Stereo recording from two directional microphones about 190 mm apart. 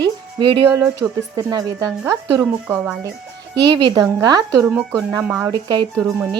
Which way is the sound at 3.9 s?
20° right (ahead or behind).